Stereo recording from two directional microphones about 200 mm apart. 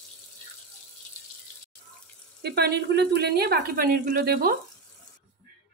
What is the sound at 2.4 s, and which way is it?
A woman's voice, 55° right (ahead or behind).